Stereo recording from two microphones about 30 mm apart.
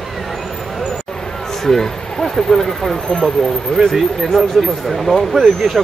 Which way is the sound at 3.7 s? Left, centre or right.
Left.